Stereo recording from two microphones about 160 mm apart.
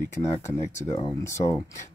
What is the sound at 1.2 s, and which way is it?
Speech, 20° left (ahead or behind).